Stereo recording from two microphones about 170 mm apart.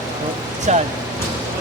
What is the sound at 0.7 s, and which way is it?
Vehicle, 40° right (ahead or behind).